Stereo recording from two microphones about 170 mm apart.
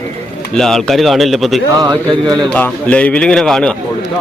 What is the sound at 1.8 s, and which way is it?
Speech, 25° right (ahead or behind).